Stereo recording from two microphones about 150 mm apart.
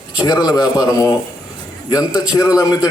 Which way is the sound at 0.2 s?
25° left (ahead or behind).